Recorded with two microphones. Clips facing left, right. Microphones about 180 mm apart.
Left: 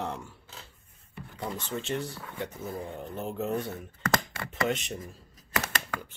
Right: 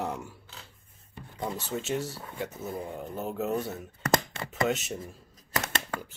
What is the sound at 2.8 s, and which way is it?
Speech, 15° right (ahead or behind).